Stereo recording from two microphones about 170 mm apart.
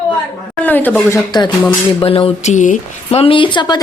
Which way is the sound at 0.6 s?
10° left (ahead or behind).